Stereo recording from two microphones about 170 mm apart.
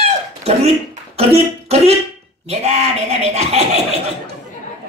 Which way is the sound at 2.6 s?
40° right (ahead or behind).